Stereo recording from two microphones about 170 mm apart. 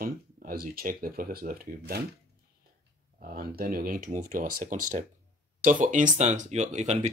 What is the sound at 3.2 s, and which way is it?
Speech, 60° right (ahead or behind).